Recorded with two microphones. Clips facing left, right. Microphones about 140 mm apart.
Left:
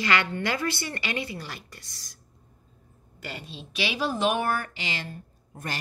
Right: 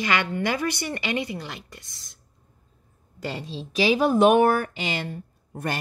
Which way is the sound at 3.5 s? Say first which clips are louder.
Right 10 dB; 35° right (ahead or behind).